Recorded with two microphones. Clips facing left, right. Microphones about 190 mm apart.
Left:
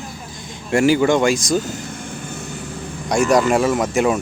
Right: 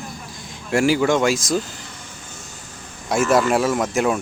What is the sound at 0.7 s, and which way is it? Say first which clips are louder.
Speech: left 3 dB; centre (ahead or behind).